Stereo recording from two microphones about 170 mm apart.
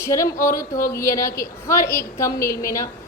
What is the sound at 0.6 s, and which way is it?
Speech, 55° left (ahead or behind).